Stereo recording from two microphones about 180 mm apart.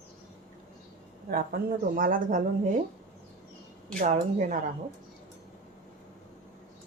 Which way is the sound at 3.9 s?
40° right (ahead or behind).